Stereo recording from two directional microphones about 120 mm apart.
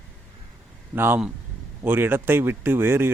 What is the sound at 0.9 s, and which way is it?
Speech, 20° right (ahead or behind).